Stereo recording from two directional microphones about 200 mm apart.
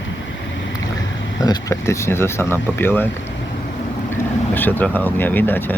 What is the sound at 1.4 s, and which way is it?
Speech, 15° left (ahead or behind).